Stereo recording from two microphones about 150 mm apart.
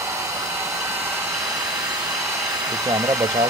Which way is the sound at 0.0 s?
20° right (ahead or behind).